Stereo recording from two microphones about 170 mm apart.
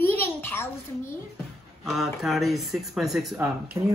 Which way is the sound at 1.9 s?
Centre (ahead or behind).